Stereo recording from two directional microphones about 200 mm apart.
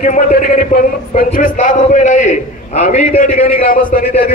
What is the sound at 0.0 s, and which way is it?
A man's voice, 45° left (ahead or behind).